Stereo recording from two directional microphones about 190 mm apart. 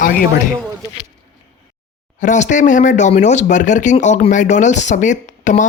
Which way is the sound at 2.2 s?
40° left (ahead or behind).